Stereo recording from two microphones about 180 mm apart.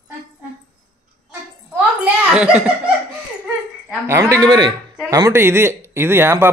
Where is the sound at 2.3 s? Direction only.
5° right (ahead or behind).